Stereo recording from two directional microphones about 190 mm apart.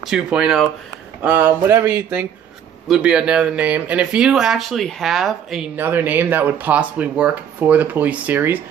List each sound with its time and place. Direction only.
0.1 s speech: 5° right (ahead or behind)